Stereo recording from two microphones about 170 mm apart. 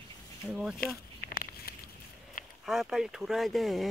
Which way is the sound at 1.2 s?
60° left (ahead or behind).